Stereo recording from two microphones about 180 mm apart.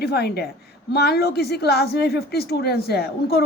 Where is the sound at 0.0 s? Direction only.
60° left (ahead or behind).